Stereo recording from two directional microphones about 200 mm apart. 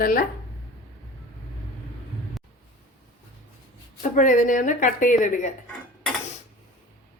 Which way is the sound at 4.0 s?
40° left (ahead or behind).